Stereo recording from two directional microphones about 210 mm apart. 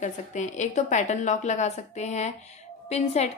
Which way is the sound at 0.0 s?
35° left (ahead or behind).